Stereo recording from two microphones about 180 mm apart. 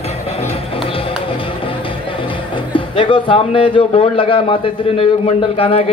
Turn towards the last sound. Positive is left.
turn(degrees=35)  # may be behind; listen again after turning